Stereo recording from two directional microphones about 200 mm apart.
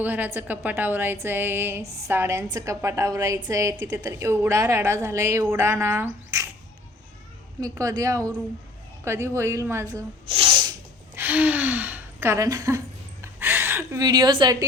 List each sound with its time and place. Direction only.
0.0 s a woman's voice: 10° right (ahead or behind)
7.6 s a woman's voice: 15° right (ahead or behind)
11.2 s speech: 10° right (ahead or behind)
13.2 s gasp: 10° right (ahead or behind)